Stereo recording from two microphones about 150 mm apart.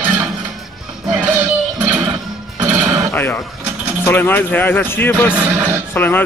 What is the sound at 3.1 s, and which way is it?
Speech, 15° left (ahead or behind).